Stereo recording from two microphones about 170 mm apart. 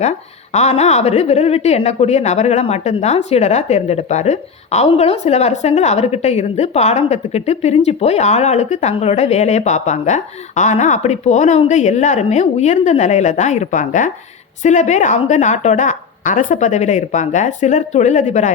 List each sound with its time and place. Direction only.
0.5 s a woman's voice: 40° left (ahead or behind)